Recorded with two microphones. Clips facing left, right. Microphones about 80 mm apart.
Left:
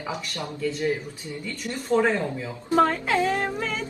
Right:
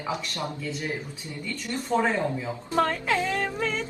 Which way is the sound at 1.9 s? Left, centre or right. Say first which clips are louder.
Left 3 dB; centre.